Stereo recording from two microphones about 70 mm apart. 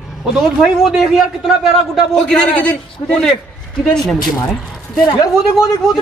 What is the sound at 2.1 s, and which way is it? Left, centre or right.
A man's voice, centre.